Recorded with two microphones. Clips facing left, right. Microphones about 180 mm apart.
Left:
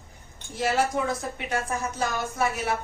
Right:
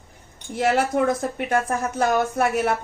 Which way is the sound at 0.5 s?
60° right (ahead or behind).